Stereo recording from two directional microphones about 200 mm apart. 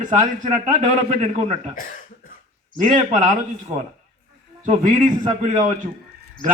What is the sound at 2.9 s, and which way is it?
A man's voice, 40° right (ahead or behind).